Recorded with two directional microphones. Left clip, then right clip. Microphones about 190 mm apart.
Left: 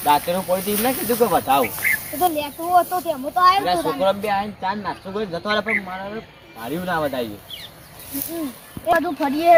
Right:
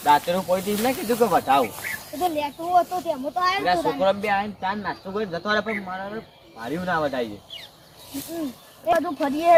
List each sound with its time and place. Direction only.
0.0 s speech: 5° left (ahead or behind)
2.1 s speech: 15° right (ahead or behind)
3.6 s speech: centre (ahead or behind)
8.9 s speech: 5° right (ahead or behind)